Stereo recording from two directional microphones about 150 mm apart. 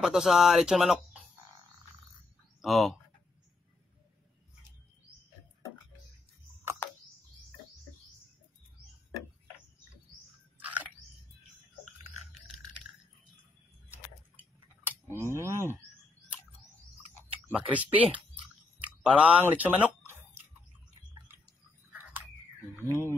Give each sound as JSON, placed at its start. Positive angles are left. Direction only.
{"t": 0.0, "sound": "speech", "side_deg": 0}
{"t": 2.6, "sound": "speech", "side_deg": 0}
{"t": 6.8, "sound": "bird", "side_deg": 15}
{"t": 10.6, "sound": "chewing", "side_deg": -10}
{"t": 14.8, "sound": "speech", "side_deg": -15}
{"t": 17.2, "sound": "speech", "side_deg": -10}
{"t": 18.8, "sound": "a sound", "side_deg": -10}